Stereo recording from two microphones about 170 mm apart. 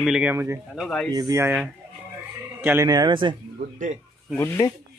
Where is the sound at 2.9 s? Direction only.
25° right (ahead or behind).